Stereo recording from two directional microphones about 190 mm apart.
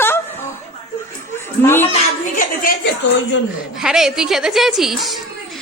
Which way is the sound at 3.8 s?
Centre (ahead or behind).